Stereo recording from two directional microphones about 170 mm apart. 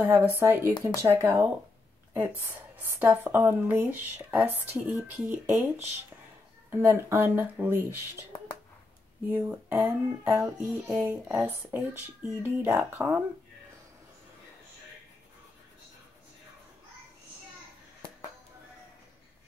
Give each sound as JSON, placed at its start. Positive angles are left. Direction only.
{"t": 0.0, "sound": "a woman's voice", "side_deg": -10}
{"t": 9.3, "sound": "a woman's voice", "side_deg": -15}